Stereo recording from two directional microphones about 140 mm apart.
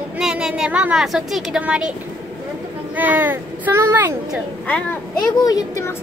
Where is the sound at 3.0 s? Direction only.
15° right (ahead or behind).